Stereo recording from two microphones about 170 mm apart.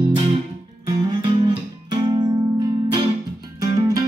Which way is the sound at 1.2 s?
30° right (ahead or behind).